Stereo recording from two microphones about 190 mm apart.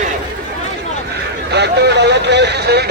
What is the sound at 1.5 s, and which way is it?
Speech, 60° right (ahead or behind).